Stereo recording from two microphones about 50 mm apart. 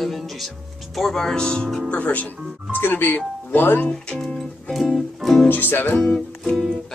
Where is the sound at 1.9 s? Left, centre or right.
Left.